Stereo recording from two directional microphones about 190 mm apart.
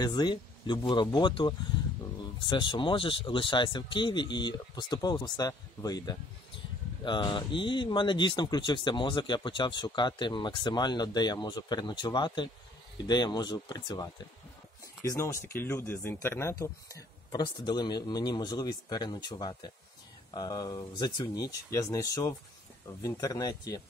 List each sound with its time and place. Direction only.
0.0 s speech: 20° left (ahead or behind)
2.5 s speech: 25° left (ahead or behind)